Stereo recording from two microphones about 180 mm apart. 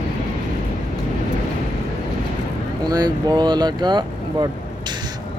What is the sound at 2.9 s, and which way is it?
Speech, 25° right (ahead or behind).